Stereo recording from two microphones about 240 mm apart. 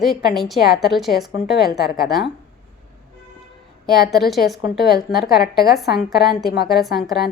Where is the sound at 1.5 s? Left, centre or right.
Left.